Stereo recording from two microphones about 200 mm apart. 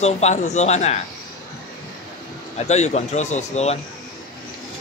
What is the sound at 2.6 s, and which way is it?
A man's voice, 35° left (ahead or behind).